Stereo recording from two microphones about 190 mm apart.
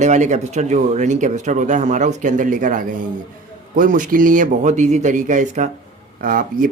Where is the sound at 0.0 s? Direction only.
40° right (ahead or behind).